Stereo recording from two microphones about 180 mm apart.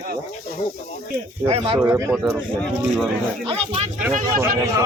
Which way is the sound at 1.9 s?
15° right (ahead or behind).